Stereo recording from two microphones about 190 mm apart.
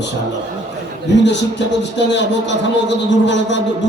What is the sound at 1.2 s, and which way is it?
A man's voice, 65° left (ahead or behind).